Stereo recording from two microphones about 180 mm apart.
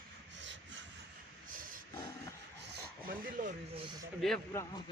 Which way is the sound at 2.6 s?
60° right (ahead or behind).